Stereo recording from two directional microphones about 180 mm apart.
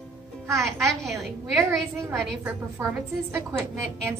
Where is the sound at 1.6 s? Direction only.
15° right (ahead or behind).